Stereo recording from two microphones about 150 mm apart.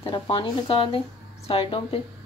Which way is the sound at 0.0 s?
35° left (ahead or behind).